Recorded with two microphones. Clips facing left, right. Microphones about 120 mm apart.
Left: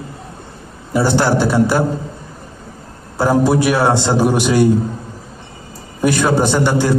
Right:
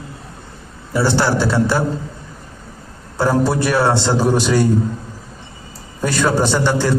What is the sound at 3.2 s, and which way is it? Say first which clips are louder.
A man's voice: left 3 dB; 15° left (ahead or behind).